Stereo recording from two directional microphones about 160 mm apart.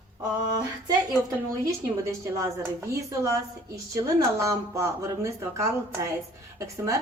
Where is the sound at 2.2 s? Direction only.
20° right (ahead or behind).